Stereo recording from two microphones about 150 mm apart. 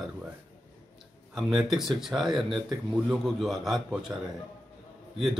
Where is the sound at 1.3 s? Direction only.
Centre (ahead or behind).